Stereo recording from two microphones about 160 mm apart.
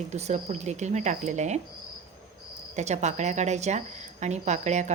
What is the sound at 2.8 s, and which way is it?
Speech, 45° right (ahead or behind).